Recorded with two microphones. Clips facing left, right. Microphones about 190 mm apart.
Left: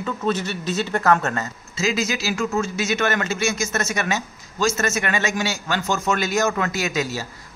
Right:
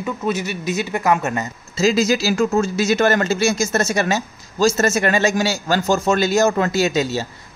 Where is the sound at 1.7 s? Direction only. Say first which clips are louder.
Right 7 dB; 35° right (ahead or behind).